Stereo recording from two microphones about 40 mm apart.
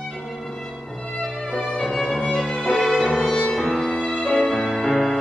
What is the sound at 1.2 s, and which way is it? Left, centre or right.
Music, centre.